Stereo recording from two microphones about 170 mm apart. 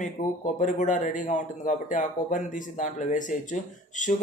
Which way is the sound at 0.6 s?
45° left (ahead or behind).